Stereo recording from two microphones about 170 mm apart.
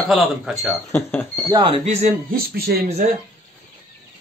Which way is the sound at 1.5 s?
25° right (ahead or behind).